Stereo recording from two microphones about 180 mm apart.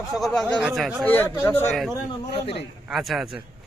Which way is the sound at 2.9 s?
Centre (ahead or behind).